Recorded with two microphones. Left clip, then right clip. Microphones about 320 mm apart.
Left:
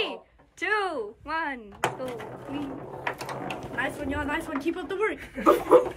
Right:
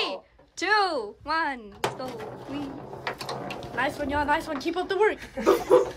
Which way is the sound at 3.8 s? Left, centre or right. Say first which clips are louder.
Right 4 dB; right.